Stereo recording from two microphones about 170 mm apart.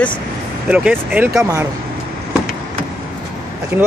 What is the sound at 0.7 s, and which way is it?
Speech, 10° right (ahead or behind).